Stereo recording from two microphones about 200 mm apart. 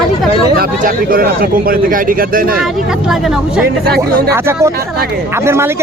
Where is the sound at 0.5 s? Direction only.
45° right (ahead or behind).